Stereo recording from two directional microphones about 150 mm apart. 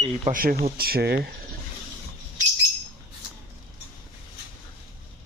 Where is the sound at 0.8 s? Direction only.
90° right.